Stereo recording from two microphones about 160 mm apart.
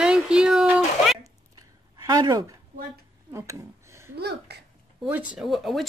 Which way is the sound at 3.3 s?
15° right (ahead or behind).